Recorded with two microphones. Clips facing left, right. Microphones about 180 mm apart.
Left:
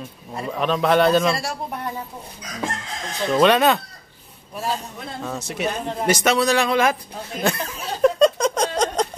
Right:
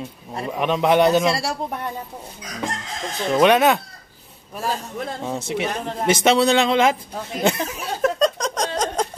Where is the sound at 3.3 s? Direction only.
10° right (ahead or behind).